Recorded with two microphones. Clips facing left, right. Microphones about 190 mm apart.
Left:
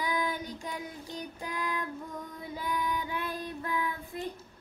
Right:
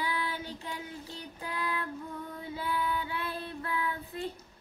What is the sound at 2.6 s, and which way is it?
Female singing, 15° left (ahead or behind).